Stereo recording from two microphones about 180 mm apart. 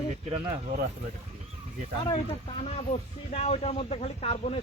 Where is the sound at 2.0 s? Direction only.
30° left (ahead or behind).